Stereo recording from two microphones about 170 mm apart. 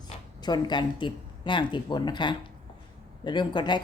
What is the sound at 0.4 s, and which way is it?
Speech, 25° left (ahead or behind).